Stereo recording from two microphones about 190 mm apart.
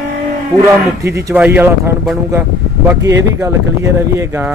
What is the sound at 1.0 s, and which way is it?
Speech, 15° right (ahead or behind).